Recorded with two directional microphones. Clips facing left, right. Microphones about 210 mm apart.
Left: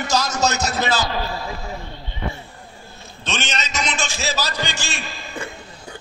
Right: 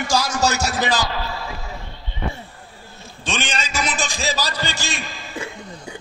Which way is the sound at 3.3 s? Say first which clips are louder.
Right 1 dB; 10° right (ahead or behind).